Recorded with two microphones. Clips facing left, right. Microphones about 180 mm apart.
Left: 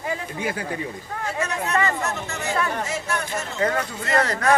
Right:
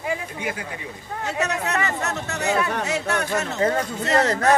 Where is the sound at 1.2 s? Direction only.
70° right (ahead or behind).